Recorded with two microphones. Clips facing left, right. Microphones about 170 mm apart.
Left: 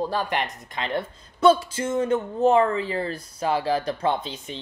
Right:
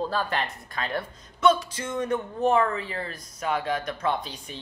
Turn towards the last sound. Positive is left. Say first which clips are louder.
# left 3 dB
turn(degrees=25)  # may be behind; listen again after turning